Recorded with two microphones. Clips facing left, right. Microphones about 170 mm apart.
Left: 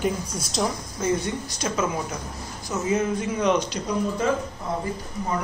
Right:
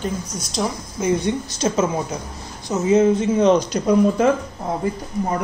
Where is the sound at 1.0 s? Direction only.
15° right (ahead or behind); by 3.6 s 30° right (ahead or behind).